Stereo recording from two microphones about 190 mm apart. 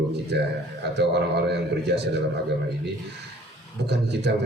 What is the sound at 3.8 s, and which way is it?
Speech, 60° right (ahead or behind).